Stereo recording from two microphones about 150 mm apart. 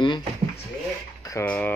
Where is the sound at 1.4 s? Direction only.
10° left (ahead or behind).